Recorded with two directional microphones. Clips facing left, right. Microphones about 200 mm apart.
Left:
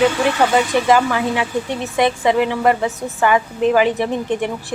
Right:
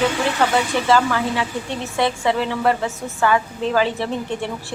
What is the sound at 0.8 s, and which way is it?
A woman's voice, 15° left (ahead or behind).